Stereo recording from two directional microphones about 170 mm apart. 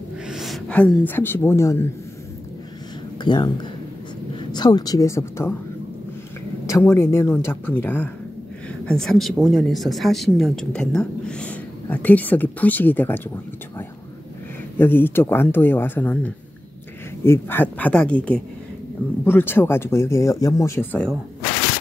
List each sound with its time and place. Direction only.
0.3 s speech: centre (ahead or behind); by 1.9 s 15° left (ahead or behind)
3.2 s a woman's voice: 25° left (ahead or behind)
6.6 s speech: 15° left (ahead or behind)
14.8 s speech: 10° left (ahead or behind)